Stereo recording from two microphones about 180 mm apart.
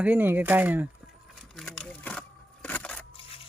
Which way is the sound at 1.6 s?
5° left (ahead or behind).